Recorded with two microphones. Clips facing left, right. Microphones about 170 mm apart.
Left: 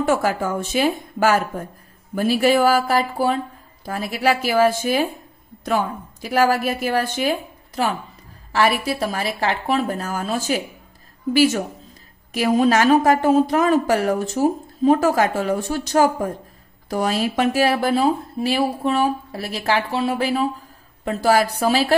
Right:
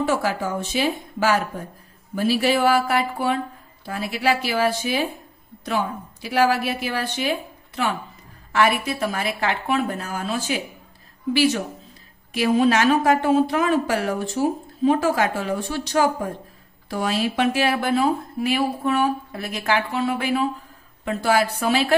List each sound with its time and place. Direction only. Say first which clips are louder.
0.0 s a woman's voice: left 3 dB; 50° left (ahead or behind)
2.1 s a woman's voice: left 3 dB; 50° left (ahead or behind)